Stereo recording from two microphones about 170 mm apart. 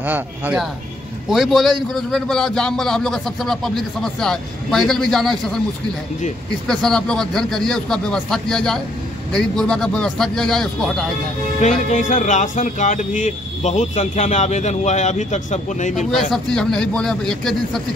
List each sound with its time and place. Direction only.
0.0 s speech: 10° right (ahead or behind)
6.7 s speech: 5° left (ahead or behind)
11.6 s speech: 45° left (ahead or behind)
16.1 s speech: centre (ahead or behind)